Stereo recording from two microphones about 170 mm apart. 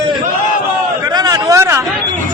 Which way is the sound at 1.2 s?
20° right (ahead or behind).